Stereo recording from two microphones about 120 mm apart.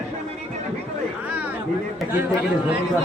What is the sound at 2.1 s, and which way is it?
Speech, 20° right (ahead or behind).